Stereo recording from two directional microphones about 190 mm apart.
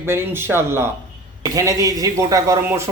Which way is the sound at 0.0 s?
10° right (ahead or behind).